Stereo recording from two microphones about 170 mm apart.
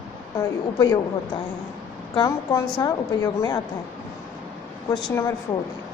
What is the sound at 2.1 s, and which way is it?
A woman's voice, 20° left (ahead or behind).